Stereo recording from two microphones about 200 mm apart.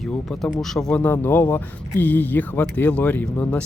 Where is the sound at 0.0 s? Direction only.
Centre (ahead or behind).